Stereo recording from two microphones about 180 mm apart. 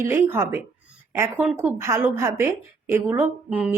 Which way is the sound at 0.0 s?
15° right (ahead or behind).